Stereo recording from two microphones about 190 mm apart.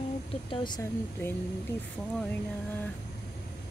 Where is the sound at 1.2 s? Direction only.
10° left (ahead or behind).